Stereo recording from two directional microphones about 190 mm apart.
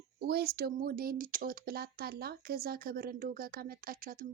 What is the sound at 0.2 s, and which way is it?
Speech, 55° right (ahead or behind).